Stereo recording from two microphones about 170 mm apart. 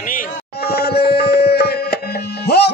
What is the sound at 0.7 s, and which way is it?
Music, 65° left (ahead or behind).